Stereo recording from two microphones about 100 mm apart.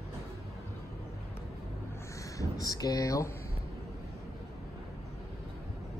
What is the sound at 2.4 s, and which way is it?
Speech, 35° left (ahead or behind).